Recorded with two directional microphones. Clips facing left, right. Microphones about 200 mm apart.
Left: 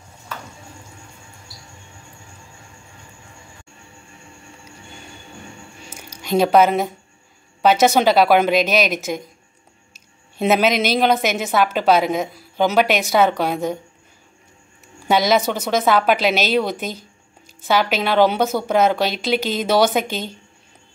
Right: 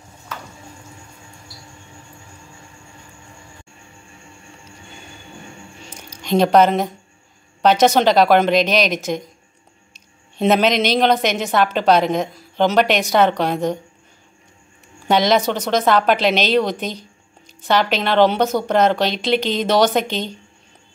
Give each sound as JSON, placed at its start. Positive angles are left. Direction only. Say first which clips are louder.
{"t": 5.9, "sound": "a sound", "louder": "even", "side_deg": 10}
{"t": 6.2, "sound": "a woman's voice", "louder": "right 1 dB", "side_deg": 5}
{"t": 15.0, "sound": "a woman's voice", "louder": "right 1 dB", "side_deg": 5}